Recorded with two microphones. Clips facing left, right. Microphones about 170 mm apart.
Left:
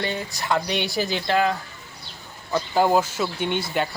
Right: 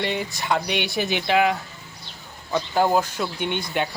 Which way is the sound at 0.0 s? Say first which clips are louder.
Right 2 dB; centre (ahead or behind).